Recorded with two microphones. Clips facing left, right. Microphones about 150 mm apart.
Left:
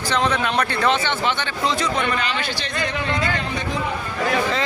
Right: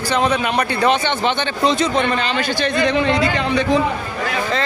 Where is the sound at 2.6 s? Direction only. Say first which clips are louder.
Right 12 dB; 75° right (ahead or behind).